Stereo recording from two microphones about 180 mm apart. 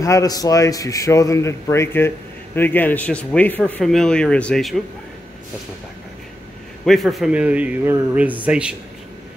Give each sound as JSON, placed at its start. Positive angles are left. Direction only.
{"t": 0.0, "sound": "a man's voice", "side_deg": 20}
{"t": 6.8, "sound": "speech", "side_deg": 0}